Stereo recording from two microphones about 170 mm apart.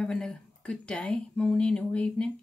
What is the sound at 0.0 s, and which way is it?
Speech, 5° left (ahead or behind).